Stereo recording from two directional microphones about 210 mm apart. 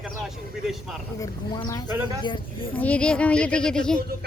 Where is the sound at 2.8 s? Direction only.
5° left (ahead or behind).